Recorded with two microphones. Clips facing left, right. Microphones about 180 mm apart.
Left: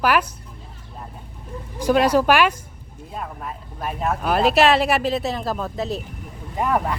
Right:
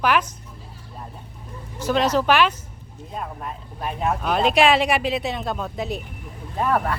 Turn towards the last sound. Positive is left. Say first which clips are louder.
# even
turn(degrees=15)  # may be behind; listen again after turning